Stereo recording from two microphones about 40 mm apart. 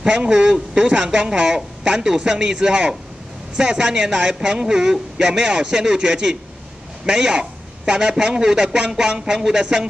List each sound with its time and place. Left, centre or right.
0.0 s a man's voice: right